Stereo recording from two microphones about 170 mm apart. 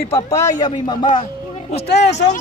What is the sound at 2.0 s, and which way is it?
Speech, 40° left (ahead or behind).